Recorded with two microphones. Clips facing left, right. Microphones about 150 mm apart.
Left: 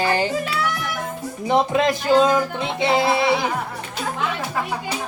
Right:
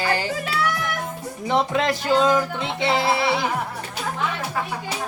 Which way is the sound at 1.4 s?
15° left (ahead or behind).